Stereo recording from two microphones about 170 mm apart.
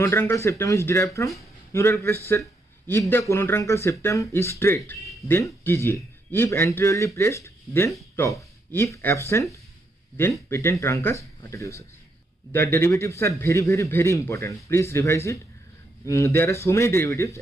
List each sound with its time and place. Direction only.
0.0 s a man's voice: 15° left (ahead or behind)